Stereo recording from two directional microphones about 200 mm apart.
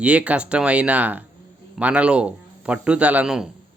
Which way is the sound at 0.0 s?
5° right (ahead or behind).